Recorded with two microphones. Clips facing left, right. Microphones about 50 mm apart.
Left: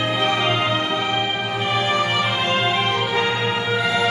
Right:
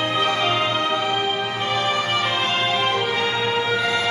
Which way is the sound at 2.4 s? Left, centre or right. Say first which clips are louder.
Left 1 dB; centre.